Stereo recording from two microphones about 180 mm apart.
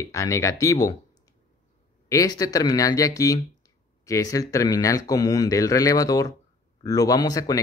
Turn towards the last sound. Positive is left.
turn(degrees=20)  # may be behind; listen again after turning